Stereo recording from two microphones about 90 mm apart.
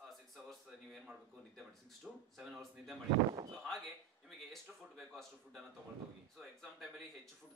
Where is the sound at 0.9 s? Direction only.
Centre (ahead or behind).